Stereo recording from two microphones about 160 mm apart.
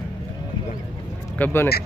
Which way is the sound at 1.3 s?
10° left (ahead or behind).